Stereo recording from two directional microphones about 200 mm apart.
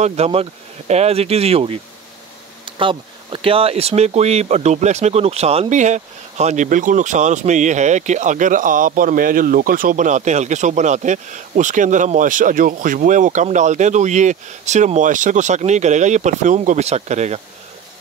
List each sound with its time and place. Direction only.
0.0 s speech: 30° right (ahead or behind)